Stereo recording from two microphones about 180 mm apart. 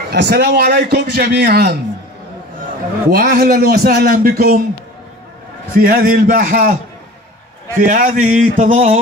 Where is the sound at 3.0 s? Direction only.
60° right (ahead or behind).